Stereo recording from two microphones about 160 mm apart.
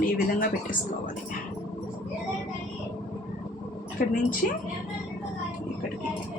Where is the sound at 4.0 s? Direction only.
65° left (ahead or behind).